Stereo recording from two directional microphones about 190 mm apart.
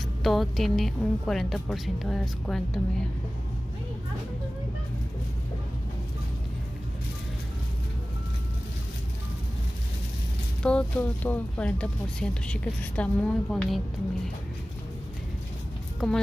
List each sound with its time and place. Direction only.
0.2 s speech: centre (ahead or behind)
10.6 s speech: 5° left (ahead or behind)
16.0 s speech: centre (ahead or behind)